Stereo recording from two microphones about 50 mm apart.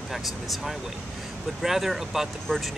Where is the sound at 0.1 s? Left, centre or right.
Centre.